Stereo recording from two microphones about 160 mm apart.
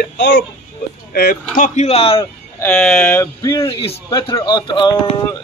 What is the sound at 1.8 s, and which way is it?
Speech, 40° left (ahead or behind).